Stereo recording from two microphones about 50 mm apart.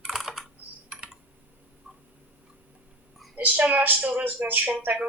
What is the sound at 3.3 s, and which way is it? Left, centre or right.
Speech, right.